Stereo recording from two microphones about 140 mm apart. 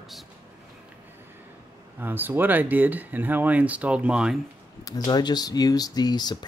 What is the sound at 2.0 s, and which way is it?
Speech, 15° right (ahead or behind).